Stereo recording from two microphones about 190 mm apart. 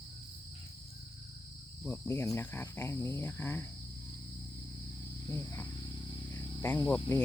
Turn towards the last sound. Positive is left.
turn(degrees=10)  # may be behind; listen again after turning